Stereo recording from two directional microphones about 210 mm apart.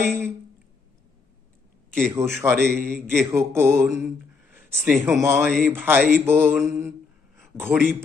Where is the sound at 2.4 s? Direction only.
10° right (ahead or behind).